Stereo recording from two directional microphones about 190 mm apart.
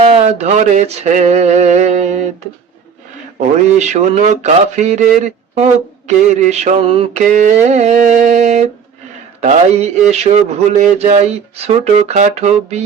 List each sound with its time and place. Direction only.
0.1 s speech: 35° right (ahead or behind)
3.8 s speech: 35° right (ahead or behind)